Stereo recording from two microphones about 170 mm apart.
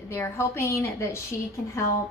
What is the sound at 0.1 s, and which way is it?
A woman's voice, 15° left (ahead or behind).